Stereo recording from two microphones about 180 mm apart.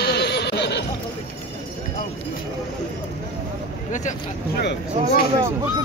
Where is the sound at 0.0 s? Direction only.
65° left (ahead or behind).